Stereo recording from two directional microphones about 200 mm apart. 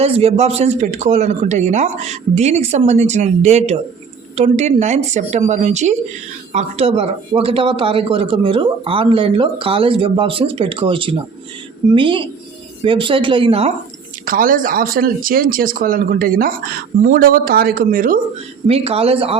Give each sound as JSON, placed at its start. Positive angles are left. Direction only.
{"t": 0.0, "sound": "speech", "side_deg": -30}
{"t": 14.3, "sound": "speech", "side_deg": -45}
{"t": 18.7, "sound": "speech", "side_deg": -30}